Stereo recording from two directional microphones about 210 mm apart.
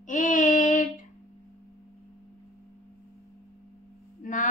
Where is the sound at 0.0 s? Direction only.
40° left (ahead or behind).